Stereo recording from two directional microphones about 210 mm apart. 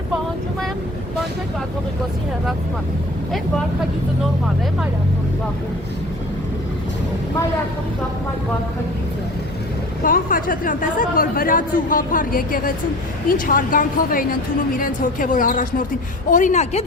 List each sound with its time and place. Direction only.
10.0 s speech: 40° left (ahead or behind)